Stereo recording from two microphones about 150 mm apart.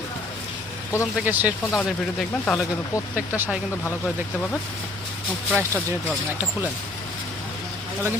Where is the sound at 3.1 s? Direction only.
10° right (ahead or behind).